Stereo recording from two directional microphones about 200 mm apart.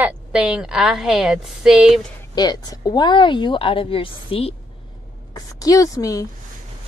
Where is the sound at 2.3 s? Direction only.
20° left (ahead or behind).